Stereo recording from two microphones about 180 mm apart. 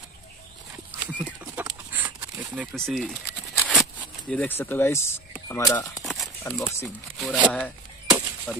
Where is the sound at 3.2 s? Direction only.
5° right (ahead or behind); by 6.0 s 20° left (ahead or behind).